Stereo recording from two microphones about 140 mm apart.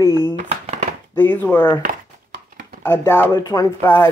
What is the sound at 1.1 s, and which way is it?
Speech, 15° left (ahead or behind).